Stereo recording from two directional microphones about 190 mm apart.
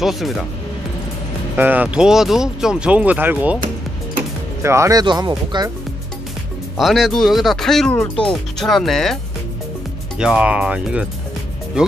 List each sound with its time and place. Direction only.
0.0 s speech: centre (ahead or behind)
1.6 s speech: 10° right (ahead or behind)
4.6 s speech: 15° right (ahead or behind)
6.8 s speech: centre (ahead or behind)